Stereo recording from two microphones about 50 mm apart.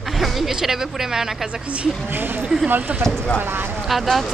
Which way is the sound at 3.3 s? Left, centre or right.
Right.